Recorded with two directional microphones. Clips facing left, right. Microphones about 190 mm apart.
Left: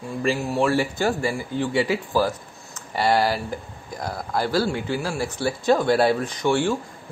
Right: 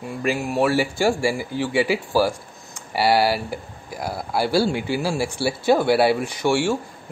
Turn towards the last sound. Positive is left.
turn(degrees=-10)  # may be behind; listen again after turning